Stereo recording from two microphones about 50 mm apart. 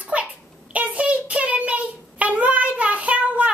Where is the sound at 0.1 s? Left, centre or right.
Right.